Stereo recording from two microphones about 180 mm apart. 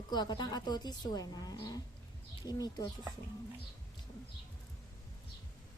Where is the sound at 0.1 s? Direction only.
25° left (ahead or behind).